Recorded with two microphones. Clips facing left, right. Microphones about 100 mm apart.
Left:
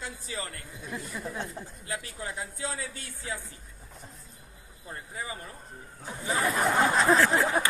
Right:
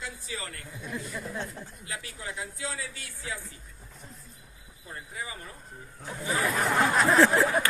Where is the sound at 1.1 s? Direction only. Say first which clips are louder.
Even; 10° left (ahead or behind).